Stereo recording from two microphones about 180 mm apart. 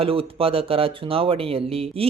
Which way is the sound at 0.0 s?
30° right (ahead or behind).